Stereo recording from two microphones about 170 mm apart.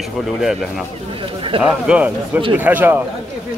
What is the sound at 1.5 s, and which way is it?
Speech, 35° right (ahead or behind).